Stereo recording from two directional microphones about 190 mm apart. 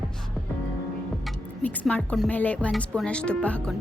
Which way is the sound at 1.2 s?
5° left (ahead or behind).